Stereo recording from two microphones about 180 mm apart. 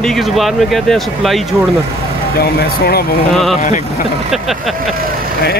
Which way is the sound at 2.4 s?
60° left (ahead or behind).